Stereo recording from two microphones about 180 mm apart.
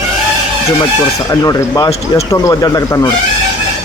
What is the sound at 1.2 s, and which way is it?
A man's voice, 20° left (ahead or behind).